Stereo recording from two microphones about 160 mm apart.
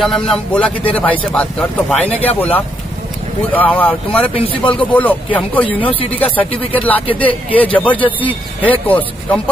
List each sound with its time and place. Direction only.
0.0 s a man's voice: 5° left (ahead or behind)
4.3 s speech: 35° left (ahead or behind)
4.7 s a man's voice: 10° left (ahead or behind)